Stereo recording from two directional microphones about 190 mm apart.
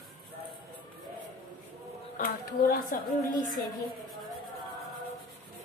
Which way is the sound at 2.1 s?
45° left (ahead or behind).